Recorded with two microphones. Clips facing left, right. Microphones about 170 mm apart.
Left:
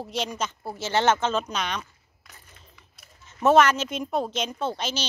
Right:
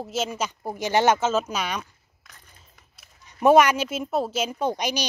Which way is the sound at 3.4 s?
10° right (ahead or behind).